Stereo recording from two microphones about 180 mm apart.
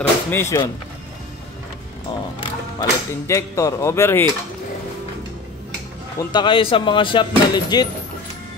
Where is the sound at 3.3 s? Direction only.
15° left (ahead or behind).